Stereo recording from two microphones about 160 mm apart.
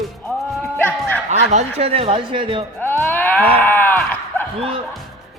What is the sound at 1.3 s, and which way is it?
Speech, 45° right (ahead or behind).